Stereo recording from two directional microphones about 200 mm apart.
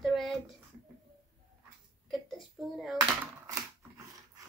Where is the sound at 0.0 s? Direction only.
Centre (ahead or behind).